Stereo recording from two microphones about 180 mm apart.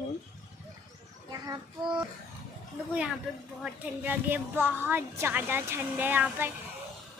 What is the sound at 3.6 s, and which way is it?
A woman's voice, 10° right (ahead or behind).